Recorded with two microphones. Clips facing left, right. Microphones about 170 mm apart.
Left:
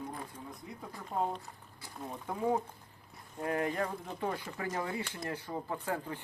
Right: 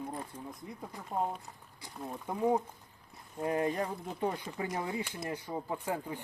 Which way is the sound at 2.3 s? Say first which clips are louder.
Right 2 dB; 15° right (ahead or behind).